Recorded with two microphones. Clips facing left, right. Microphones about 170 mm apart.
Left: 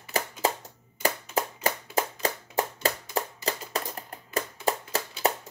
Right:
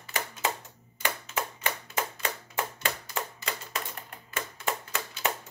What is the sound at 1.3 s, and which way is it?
Clapping, 35° left (ahead or behind).